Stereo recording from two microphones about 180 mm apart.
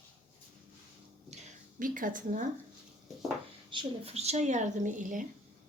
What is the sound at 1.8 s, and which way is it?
Speech, 50° right (ahead or behind).